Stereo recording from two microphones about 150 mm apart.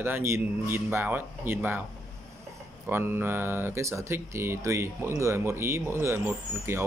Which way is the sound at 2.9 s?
15° right (ahead or behind).